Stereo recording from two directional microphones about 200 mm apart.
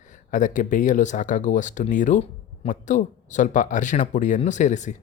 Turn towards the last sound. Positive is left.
turn(degrees=35)  # may be behind; listen again after turning